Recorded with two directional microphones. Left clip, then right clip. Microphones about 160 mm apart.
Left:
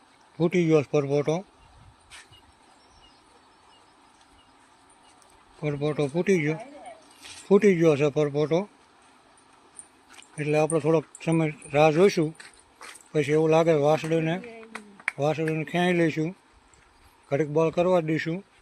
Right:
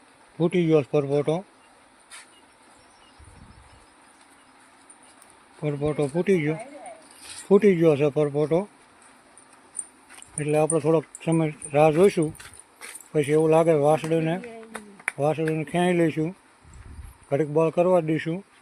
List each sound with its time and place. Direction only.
0.3 s speech: centre (ahead or behind)
5.5 s speech: 5° right (ahead or behind)
10.2 s speech: centre (ahead or behind)
14.5 s a sound: 50° right (ahead or behind)
15.2 s speech: 10° right (ahead or behind)